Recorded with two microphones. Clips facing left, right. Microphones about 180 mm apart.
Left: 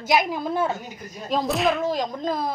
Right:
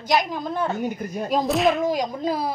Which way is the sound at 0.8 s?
55° right (ahead or behind).